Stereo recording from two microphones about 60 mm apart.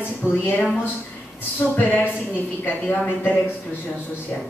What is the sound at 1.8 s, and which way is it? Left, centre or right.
A woman's voice, left.